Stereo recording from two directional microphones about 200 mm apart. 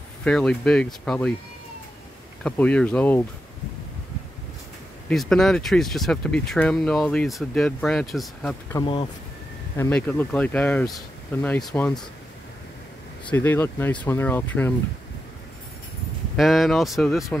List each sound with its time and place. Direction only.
0.2 s speech: 5° left (ahead or behind)
2.4 s speech: 5° left (ahead or behind)
5.1 s speech: centre (ahead or behind)
8.7 s speech: 25° left (ahead or behind)
9.8 s speech: 10° left (ahead or behind)
13.3 s speech: 10° left (ahead or behind)
16.3 s speech: centre (ahead or behind)